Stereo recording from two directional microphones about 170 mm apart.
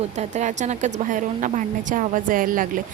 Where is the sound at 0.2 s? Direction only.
45° right (ahead or behind).